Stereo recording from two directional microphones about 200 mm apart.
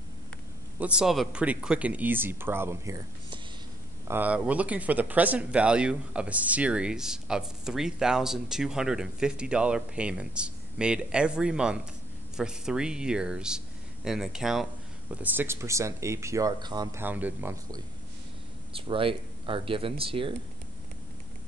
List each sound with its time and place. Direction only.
0.7 s speech: 5° right (ahead or behind)
17.0 s speech: 10° right (ahead or behind)
18.7 s speech: 25° right (ahead or behind)